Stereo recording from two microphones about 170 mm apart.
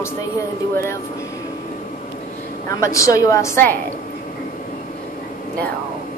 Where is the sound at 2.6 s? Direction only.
20° left (ahead or behind).